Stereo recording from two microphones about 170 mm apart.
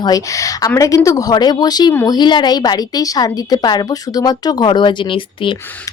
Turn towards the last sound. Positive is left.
turn(degrees=30)  # may be behind; listen again after turning